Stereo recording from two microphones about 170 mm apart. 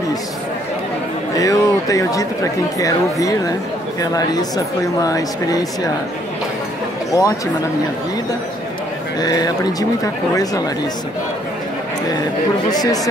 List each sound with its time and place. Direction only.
1.3 s speech: 20° left (ahead or behind)
7.1 s speech: 20° left (ahead or behind)
9.2 s speech: 25° left (ahead or behind)
12.7 s speech: 20° left (ahead or behind)